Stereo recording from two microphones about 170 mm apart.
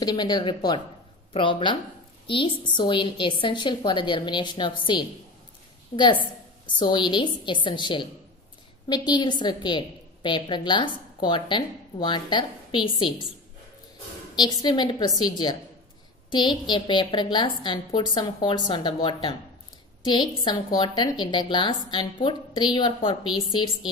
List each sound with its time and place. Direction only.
0.0 s a woman's voice: 25° left (ahead or behind)
6.6 s a woman's voice: 25° left (ahead or behind)
14.3 s a woman's voice: 25° left (ahead or behind)